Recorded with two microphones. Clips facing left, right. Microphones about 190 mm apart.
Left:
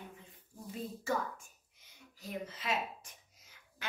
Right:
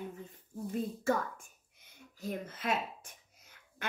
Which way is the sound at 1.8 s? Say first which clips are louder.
Right 8 dB; 50° right (ahead or behind).